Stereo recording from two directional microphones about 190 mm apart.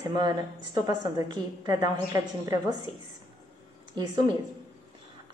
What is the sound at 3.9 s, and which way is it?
Speech, 25° right (ahead or behind).